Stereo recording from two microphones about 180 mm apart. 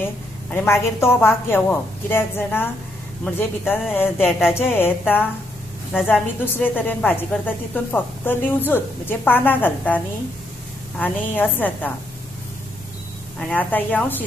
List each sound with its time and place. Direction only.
0.0 s a woman's voice: 10° left (ahead or behind)
4.2 s a sound: 5° right (ahead or behind)
4.6 s a woman's voice: 10° left (ahead or behind)
13.4 s a woman's voice: 10° left (ahead or behind)